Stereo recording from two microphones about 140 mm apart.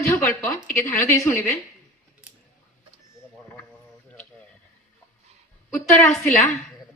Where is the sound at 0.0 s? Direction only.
20° left (ahead or behind).